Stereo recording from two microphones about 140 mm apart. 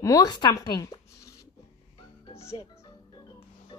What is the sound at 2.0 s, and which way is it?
Music, 40° left (ahead or behind).